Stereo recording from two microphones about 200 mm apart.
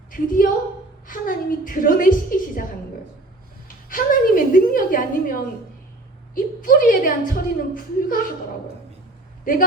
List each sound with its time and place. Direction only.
0.1 s a woman's voice: 45° left (ahead or behind)
3.8 s a woman's voice: 45° left (ahead or behind)
9.4 s speech: 45° left (ahead or behind)